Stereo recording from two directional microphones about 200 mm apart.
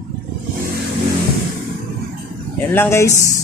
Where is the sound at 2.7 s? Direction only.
10° left (ahead or behind).